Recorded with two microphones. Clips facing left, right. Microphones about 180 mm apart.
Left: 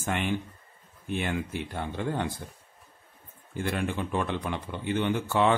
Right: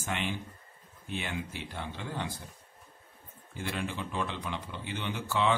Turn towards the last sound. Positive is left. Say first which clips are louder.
# left 6 dB
turn(degrees=50)  # may be behind; listen again after turning